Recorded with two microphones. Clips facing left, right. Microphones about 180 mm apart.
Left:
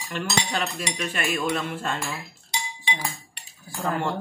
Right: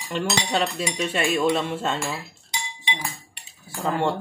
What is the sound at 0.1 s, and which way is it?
Cutlery, 25° right (ahead or behind).